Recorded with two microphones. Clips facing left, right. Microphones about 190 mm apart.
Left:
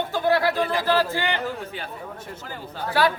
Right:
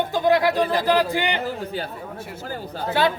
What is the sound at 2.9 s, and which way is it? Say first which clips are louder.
Speech: right 1 dB; 20° right (ahead or behind).